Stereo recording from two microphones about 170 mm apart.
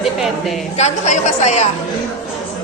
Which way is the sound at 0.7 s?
45° left (ahead or behind).